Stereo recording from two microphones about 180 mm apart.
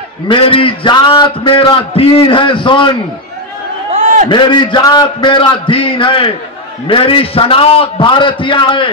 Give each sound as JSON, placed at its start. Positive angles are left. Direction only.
{"t": 0.3, "sound": "a man's voice", "side_deg": 30}
{"t": 3.9, "sound": "a sound", "side_deg": -45}
{"t": 4.3, "sound": "a man's voice", "side_deg": 25}